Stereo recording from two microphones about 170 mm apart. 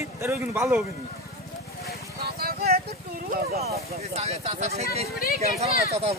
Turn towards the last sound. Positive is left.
turn(degrees=-35)  # may be behind; listen again after turning